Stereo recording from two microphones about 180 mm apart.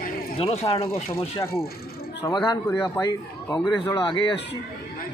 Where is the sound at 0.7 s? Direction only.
30° left (ahead or behind).